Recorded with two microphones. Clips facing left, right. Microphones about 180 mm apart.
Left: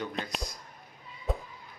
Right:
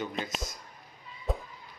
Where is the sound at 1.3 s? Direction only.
Centre (ahead or behind).